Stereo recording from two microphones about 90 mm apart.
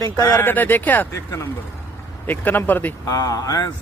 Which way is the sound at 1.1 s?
35° left (ahead or behind).